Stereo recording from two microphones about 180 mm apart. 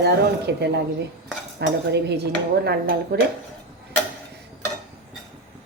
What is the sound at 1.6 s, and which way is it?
Cutlery, 70° right (ahead or behind).